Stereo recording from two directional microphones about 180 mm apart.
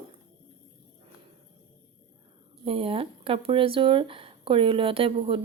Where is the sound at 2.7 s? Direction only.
30° right (ahead or behind).